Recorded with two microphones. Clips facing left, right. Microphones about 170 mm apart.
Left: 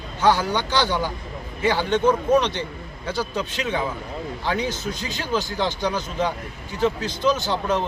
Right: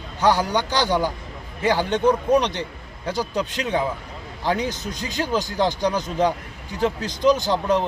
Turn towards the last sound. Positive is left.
turn(degrees=-40)  # may be behind; listen again after turning